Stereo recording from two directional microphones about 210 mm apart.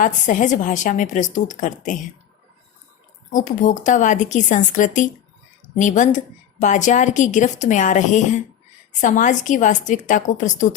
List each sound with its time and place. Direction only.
0.0 s a woman's voice: 35° left (ahead or behind)
3.3 s a woman's voice: 40° left (ahead or behind)